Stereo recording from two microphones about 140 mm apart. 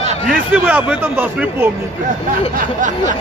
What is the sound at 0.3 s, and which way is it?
Speech, 10° right (ahead or behind).